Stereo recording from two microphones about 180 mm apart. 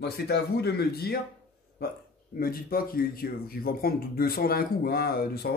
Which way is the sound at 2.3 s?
55° left (ahead or behind).